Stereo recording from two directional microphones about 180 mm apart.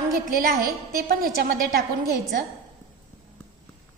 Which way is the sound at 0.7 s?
55° right (ahead or behind).